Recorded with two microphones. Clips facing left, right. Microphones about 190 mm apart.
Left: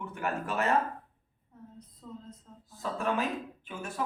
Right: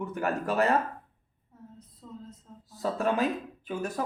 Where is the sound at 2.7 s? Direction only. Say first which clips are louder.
Right 4 dB; 35° right (ahead or behind).